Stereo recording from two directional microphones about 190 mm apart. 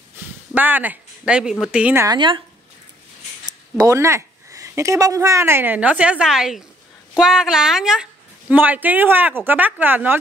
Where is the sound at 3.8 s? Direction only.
15° right (ahead or behind).